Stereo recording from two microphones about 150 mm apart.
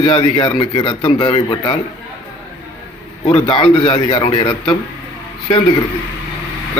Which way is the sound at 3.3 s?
40° left (ahead or behind).